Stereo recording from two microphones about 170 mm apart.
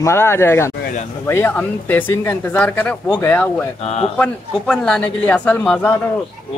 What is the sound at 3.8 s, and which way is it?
Speech, 40° left (ahead or behind).